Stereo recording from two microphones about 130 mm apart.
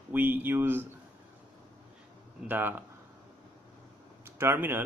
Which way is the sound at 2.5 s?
15° right (ahead or behind).